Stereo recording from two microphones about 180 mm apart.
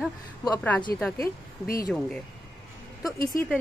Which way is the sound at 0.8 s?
5° left (ahead or behind).